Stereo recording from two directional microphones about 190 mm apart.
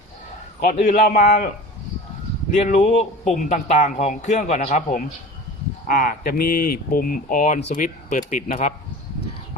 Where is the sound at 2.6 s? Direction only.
40° left (ahead or behind).